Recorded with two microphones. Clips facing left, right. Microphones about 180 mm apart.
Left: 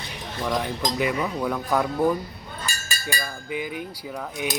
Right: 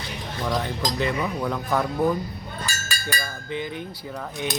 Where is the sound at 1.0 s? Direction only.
10° left (ahead or behind).